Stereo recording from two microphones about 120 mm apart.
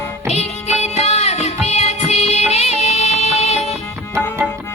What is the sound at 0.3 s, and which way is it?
Music, 65° left (ahead or behind).